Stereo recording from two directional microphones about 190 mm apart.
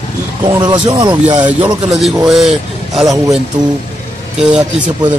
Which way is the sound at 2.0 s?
Centre (ahead or behind).